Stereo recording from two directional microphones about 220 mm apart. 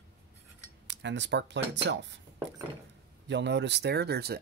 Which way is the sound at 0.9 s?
55° right (ahead or behind).